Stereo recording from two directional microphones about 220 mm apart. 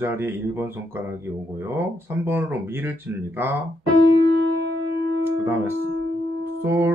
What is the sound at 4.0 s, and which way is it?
Keyboard, 55° right (ahead or behind).